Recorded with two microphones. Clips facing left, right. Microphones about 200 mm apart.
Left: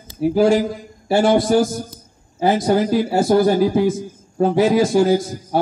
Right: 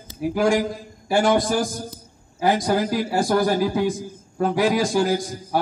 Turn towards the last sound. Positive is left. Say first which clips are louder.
# left 5 dB
turn(degrees=25)  # may be behind; listen again after turning